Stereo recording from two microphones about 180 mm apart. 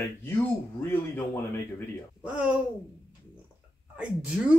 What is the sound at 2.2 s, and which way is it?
Speech, 5° right (ahead or behind).